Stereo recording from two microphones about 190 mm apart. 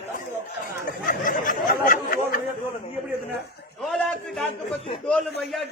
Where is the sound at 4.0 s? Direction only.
Centre (ahead or behind).